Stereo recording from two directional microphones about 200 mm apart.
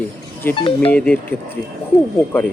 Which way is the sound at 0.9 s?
5° left (ahead or behind).